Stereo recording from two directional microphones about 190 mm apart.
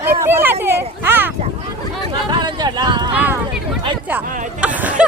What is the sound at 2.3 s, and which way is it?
Speech, 20° right (ahead or behind).